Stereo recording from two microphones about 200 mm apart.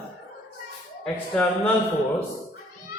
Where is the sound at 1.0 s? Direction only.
5° left (ahead or behind).